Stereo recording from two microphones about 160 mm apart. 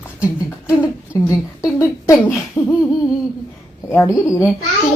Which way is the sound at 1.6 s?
20° left (ahead or behind).